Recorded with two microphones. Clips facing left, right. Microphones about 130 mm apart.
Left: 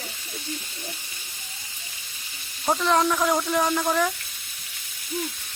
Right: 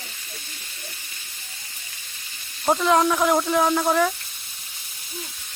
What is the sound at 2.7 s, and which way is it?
Speech, 10° right (ahead or behind).